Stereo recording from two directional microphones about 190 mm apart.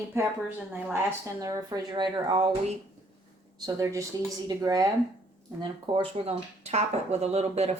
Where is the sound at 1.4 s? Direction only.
20° right (ahead or behind).